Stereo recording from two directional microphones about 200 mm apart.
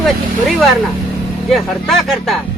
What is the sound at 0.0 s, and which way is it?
Speech, centre (ahead or behind).